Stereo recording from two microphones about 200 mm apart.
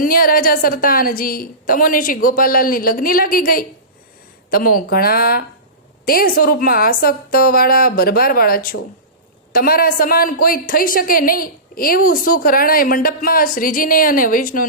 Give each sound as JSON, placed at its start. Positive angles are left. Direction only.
{"t": 0.0, "sound": "a woman's voice", "side_deg": 45}